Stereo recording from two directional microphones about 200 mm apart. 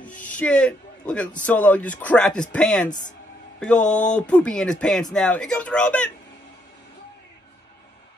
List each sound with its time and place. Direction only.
0.2 s a man's voice: 5° left (ahead or behind)
2.9 s speech: 40° left (ahead or behind)
3.5 s music: 5° left (ahead or behind)
4.1 s speech: 5° left (ahead or behind)